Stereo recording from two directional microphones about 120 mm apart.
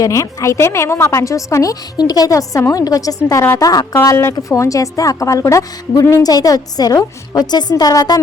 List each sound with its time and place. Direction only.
0.0 s a woman's voice: 30° left (ahead or behind)